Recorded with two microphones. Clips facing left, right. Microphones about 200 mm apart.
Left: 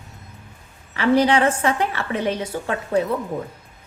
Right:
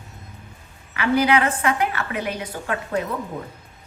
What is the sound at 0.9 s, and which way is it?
A woman's voice, 30° left (ahead or behind).